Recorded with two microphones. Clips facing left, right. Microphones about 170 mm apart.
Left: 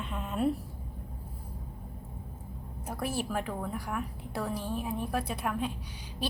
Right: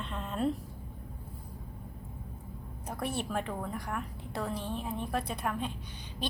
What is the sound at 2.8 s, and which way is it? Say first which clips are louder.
A woman's voice: left 1 dB; 5° left (ahead or behind).